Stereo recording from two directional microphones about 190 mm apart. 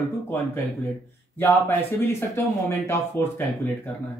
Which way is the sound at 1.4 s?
10° left (ahead or behind).